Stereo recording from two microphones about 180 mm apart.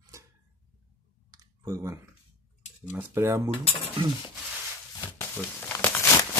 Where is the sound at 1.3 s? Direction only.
20° right (ahead or behind).